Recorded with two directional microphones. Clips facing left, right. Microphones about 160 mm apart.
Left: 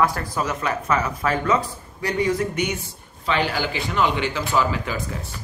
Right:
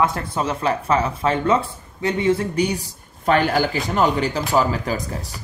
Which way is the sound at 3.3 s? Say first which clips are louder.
Right 5 dB; 50° right (ahead or behind).